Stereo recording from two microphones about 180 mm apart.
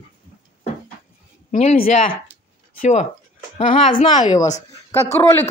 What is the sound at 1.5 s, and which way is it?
Speech, 40° left (ahead or behind).